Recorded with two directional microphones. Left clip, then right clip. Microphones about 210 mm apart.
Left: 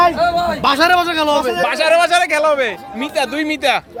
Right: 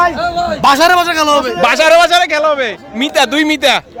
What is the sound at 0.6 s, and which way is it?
Speech, 50° right (ahead or behind).